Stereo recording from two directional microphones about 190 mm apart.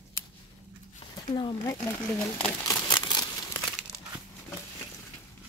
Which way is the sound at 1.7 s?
5° left (ahead or behind).